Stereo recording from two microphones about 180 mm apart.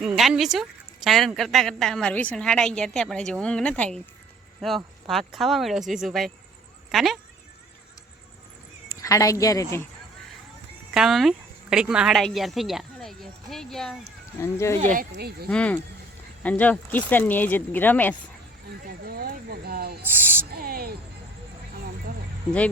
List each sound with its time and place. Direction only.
0.0 s a woman's voice: centre (ahead or behind)
9.0 s speech: 20° left (ahead or behind)
10.9 s speech: centre (ahead or behind)
14.4 s speech: 15° left (ahead or behind)
15.1 s speech: 60° right (ahead or behind)
15.4 s speech: 5° left (ahead or behind)
19.0 s speech: 60° right (ahead or behind)